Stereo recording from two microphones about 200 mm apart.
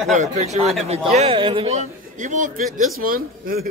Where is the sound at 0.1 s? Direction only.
35° right (ahead or behind).